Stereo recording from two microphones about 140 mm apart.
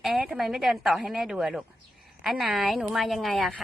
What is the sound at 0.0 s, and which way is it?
A woman's voice, 5° right (ahead or behind).